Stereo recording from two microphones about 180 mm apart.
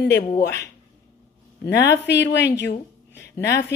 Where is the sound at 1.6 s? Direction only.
70° left (ahead or behind).